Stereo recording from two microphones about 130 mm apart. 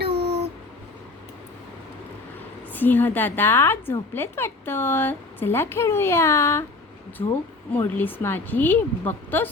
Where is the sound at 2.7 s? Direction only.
15° left (ahead or behind).